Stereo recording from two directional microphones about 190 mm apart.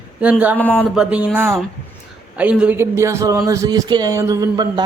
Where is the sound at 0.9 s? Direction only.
5° right (ahead or behind).